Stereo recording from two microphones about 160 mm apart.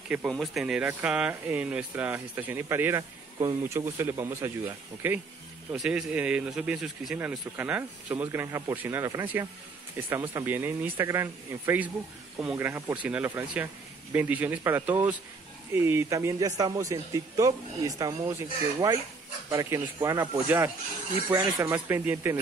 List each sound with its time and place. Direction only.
0.1 s a man's voice: 5° right (ahead or behind); by 18.3 s 20° right (ahead or behind)
19.5 s a man's voice: 20° right (ahead or behind)